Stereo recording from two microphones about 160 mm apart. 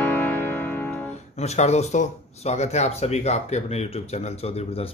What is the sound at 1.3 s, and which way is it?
Speech, 45° left (ahead or behind).